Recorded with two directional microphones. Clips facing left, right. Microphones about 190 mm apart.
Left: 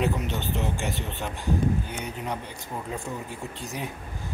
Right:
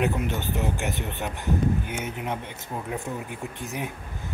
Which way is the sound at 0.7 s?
20° right (ahead or behind).